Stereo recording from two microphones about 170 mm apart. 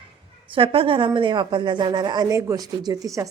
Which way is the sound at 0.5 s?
30° right (ahead or behind).